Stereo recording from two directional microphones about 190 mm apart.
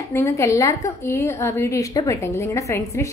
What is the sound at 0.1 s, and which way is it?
A woman's voice, 15° left (ahead or behind).